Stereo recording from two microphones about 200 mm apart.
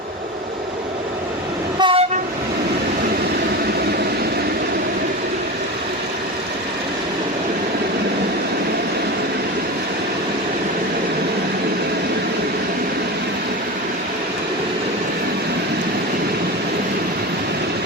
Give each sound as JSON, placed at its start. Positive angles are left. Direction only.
{"t": 1.8, "sound": "train", "side_deg": -25}